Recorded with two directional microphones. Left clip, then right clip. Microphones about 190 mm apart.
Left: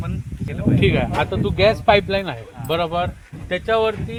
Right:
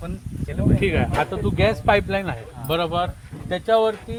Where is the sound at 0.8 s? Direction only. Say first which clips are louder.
Left 3 dB; 55° left (ahead or behind).